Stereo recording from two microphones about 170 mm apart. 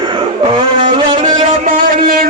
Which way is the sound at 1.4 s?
45° right (ahead or behind).